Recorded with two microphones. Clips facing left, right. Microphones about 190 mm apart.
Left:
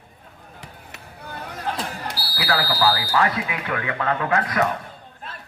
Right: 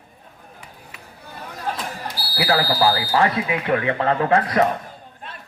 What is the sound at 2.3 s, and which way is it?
Speech, 25° right (ahead or behind).